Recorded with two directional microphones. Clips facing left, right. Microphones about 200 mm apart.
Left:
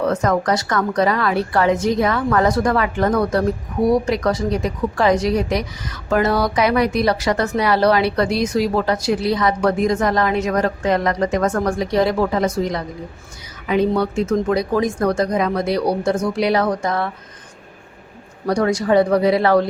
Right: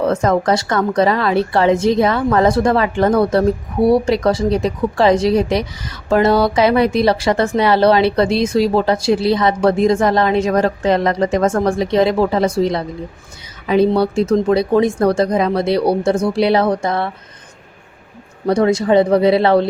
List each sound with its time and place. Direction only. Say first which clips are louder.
0.0 s a woman's voice: right 3 dB; 25° right (ahead or behind)
18.4 s a woman's voice: right 4 dB; 25° right (ahead or behind)